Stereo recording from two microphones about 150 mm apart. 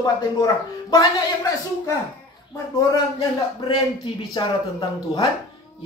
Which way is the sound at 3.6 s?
30° left (ahead or behind).